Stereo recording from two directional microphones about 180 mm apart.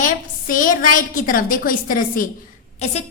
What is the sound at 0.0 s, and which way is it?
A woman's voice, 50° left (ahead or behind).